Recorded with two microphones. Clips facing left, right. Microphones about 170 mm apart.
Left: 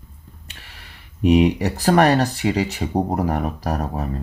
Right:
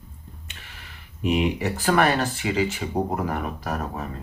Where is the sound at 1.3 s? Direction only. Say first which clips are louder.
Left 7 dB; 40° left (ahead or behind).